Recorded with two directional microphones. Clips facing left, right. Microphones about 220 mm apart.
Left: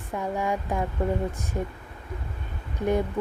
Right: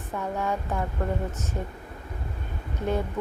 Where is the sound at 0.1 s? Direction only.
15° left (ahead or behind).